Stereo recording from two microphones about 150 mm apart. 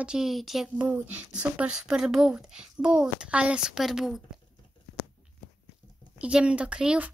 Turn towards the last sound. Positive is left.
turn(degrees=-5)  # may be behind; listen again after turning